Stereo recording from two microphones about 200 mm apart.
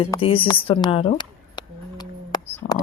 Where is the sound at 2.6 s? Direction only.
35° left (ahead or behind).